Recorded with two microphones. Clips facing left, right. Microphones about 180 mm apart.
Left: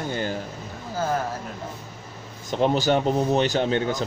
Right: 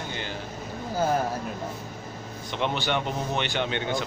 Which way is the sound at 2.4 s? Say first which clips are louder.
Left 7 dB; 40° left (ahead or behind).